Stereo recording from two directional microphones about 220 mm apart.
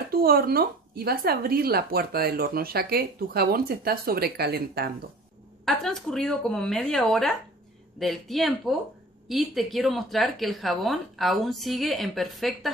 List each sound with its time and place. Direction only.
0.1 s a woman's voice: 45° right (ahead or behind)
5.7 s speech: centre (ahead or behind)